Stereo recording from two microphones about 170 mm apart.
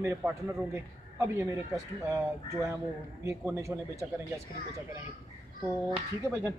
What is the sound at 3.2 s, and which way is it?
Speech, 20° right (ahead or behind).